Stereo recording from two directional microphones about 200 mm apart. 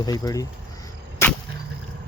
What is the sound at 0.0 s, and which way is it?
Speech, 20° left (ahead or behind).